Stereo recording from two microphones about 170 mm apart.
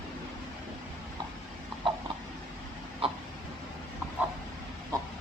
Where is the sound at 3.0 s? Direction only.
30° right (ahead or behind).